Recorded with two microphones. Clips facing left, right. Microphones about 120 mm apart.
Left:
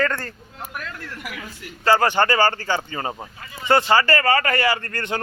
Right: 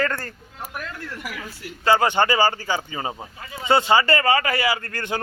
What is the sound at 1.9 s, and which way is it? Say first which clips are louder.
Speech: left 1 dB; 15° right (ahead or behind).